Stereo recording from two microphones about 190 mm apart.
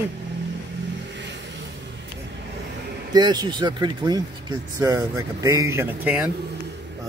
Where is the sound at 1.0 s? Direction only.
65° right (ahead or behind).